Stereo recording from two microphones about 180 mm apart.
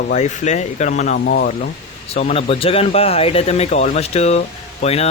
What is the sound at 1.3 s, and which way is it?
Speech, 55° left (ahead or behind).